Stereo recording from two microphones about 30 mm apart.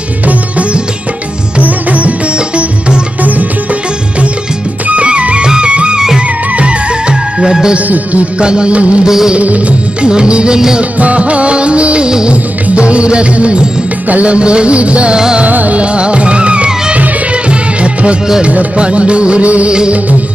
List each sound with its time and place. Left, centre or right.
1.6 s music: right
5.0 s music: right
5.9 s music: right
6.5 s music: right
7.9 s music: right
8.4 s music: right
8.7 s music: right
9.0 s music: centre
9.4 s music: right
10.0 s music: right
10.8 s music: right
15.4 s music: right
15.8 s music: right